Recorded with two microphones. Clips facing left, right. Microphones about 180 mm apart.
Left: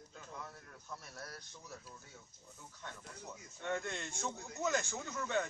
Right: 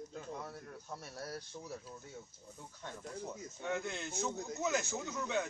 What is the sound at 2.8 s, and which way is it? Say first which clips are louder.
Speech: right 7 dB; 30° right (ahead or behind).